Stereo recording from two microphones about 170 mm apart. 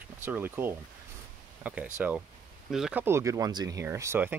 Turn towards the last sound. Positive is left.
turn(degrees=-15)  # may be behind; listen again after turning